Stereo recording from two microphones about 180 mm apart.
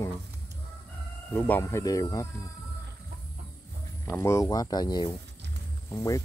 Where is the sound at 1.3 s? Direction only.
10° left (ahead or behind).